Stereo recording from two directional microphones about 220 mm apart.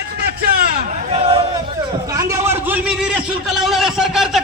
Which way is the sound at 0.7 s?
35° right (ahead or behind).